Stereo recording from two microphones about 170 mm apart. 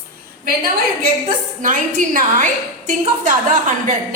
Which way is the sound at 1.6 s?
50° right (ahead or behind).